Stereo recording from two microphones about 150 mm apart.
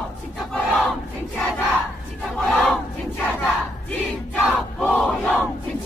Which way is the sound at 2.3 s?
Centre (ahead or behind).